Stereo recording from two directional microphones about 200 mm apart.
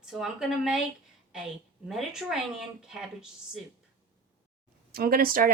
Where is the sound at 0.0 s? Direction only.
5° right (ahead or behind).